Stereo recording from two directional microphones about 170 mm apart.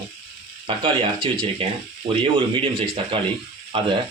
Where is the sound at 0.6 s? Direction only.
30° right (ahead or behind).